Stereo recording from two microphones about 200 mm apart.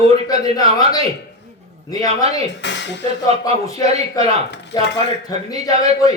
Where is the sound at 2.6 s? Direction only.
60° left (ahead or behind).